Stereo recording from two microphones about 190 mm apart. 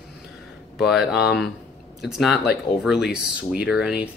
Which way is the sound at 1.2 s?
55° left (ahead or behind).